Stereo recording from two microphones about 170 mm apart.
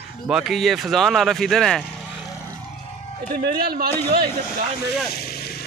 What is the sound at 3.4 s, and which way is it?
Speech, 65° right (ahead or behind).